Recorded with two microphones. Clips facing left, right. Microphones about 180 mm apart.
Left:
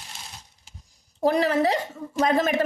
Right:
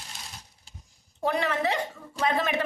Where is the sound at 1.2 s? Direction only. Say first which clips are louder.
Left 6 dB; 35° left (ahead or behind).